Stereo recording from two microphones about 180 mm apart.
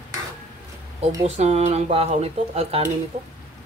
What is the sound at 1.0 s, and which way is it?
Speech, 35° right (ahead or behind).